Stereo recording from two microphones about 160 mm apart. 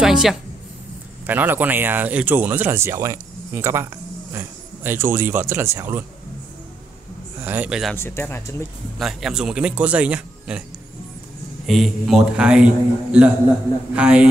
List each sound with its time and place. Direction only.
0.0 s a man's voice: 5° right (ahead or behind)
7.3 s speech: 10° right (ahead or behind)
7.9 s speech: 15° left (ahead or behind)
8.9 s speech: centre (ahead or behind)
11.6 s a man's voice: centre (ahead or behind)